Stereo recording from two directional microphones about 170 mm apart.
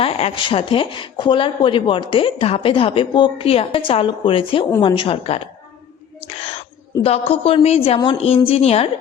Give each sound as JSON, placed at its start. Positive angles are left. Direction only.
{"t": 0.0, "sound": "speech", "side_deg": 35}
{"t": 7.0, "sound": "speech", "side_deg": 35}